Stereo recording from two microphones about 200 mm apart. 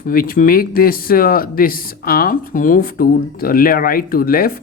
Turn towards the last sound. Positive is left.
turn(degrees=45)  # may be behind; listen again after turning